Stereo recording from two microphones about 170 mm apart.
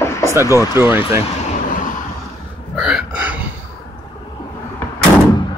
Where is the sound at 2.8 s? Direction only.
5° right (ahead or behind).